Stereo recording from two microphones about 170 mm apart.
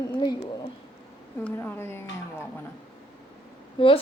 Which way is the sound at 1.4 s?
10° left (ahead or behind).